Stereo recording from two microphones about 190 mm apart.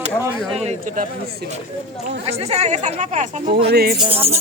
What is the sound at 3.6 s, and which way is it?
Speech, 55° right (ahead or behind).